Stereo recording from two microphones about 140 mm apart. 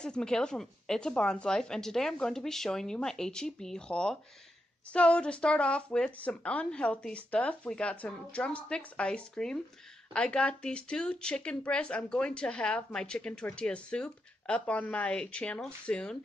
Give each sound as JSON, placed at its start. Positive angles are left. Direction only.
{"t": 0.0, "sound": "a woman's voice", "side_deg": 5}